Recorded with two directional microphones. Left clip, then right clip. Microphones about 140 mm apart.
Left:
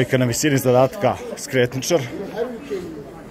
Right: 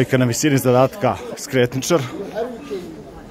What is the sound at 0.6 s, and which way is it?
Speech, 90° right.